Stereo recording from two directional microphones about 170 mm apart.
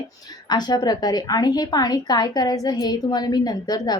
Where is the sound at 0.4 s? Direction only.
25° left (ahead or behind).